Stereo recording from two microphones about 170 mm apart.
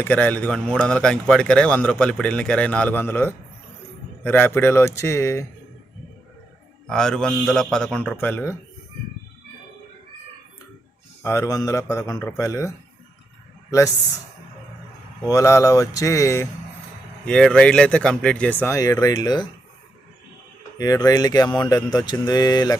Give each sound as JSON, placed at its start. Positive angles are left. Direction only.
{"t": 0.0, "sound": "a man's voice", "side_deg": 10}
{"t": 6.8, "sound": "a man's voice", "side_deg": 5}
{"t": 11.2, "sound": "a man's voice", "side_deg": 15}
{"t": 15.3, "sound": "speech", "side_deg": 20}
{"t": 17.2, "sound": "a man's voice", "side_deg": 5}
{"t": 20.7, "sound": "speech", "side_deg": 20}